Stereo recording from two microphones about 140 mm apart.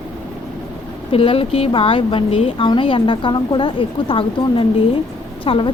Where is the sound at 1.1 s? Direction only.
40° left (ahead or behind).